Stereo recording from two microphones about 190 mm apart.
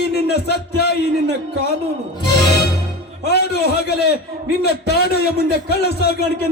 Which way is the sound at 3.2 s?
60° left (ahead or behind).